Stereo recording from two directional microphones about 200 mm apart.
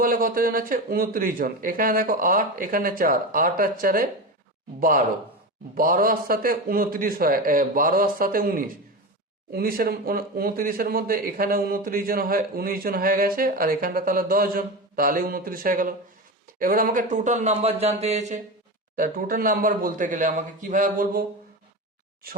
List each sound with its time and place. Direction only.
0.0 s speech: 45° right (ahead or behind)